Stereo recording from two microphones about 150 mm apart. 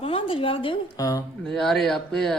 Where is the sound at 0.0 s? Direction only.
35° left (ahead or behind).